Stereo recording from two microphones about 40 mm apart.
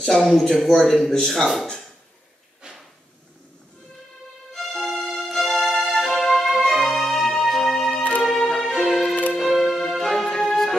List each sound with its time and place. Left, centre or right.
0.2 s speech: centre
2.6 s drawer open or close: right
4.5 s music: centre